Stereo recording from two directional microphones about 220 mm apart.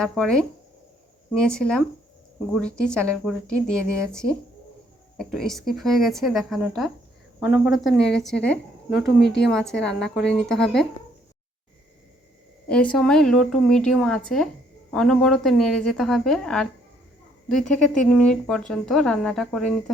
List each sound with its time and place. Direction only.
0.0 s speech: 5° left (ahead or behind)
12.6 s speech: 5° left (ahead or behind)